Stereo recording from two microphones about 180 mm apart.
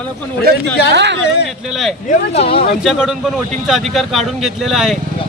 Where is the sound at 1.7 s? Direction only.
Centre (ahead or behind).